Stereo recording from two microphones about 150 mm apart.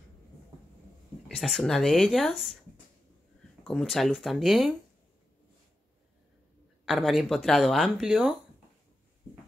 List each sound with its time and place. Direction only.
1.3 s speech: centre (ahead or behind)
3.6 s speech: centre (ahead or behind)
6.9 s speech: centre (ahead or behind)